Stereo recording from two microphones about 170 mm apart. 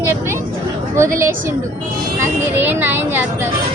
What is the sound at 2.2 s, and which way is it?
A man's voice, 10° right (ahead or behind).